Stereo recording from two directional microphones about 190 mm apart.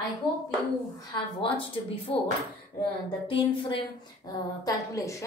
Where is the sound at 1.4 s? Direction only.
25° left (ahead or behind).